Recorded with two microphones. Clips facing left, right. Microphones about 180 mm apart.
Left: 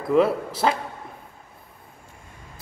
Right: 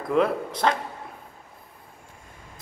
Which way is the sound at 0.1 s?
5° left (ahead or behind).